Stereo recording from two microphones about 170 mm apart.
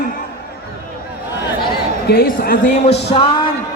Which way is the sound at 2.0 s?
65° left (ahead or behind).